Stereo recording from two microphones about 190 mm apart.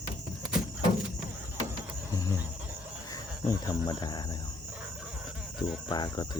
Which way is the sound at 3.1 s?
20° left (ahead or behind).